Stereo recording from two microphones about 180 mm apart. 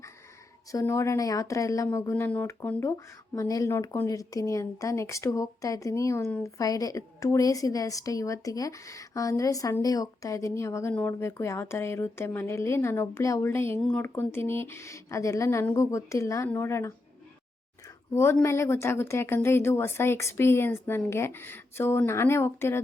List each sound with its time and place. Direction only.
0.7 s a woman's voice: 15° left (ahead or behind)